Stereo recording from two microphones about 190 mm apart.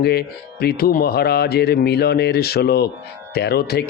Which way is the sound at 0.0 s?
60° left (ahead or behind).